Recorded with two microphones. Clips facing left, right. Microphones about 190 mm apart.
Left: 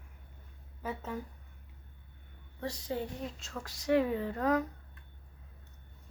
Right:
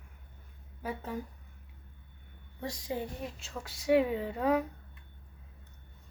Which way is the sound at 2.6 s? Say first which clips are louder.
Even; 15° right (ahead or behind).